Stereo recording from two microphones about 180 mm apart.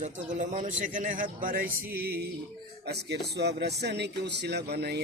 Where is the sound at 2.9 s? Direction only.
70° right (ahead or behind).